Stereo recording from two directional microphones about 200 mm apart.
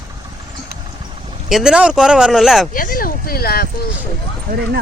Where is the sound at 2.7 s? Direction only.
45° left (ahead or behind).